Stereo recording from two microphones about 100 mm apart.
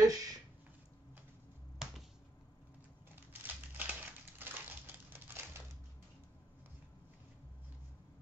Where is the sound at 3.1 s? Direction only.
20° right (ahead or behind).